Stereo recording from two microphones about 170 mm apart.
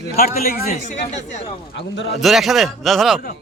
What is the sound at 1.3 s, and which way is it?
Speech, 45° left (ahead or behind).